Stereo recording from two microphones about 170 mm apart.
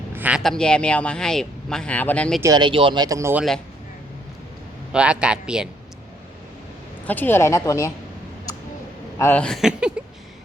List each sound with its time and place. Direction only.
0.1 s speech: 10° right (ahead or behind); by 2.4 s 5° left (ahead or behind)
2.4 s speech: 25° right (ahead or behind)
4.9 s speech: 5° right (ahead or behind)
7.1 s speech: 10° left (ahead or behind)
9.1 s speech: 10° left (ahead or behind)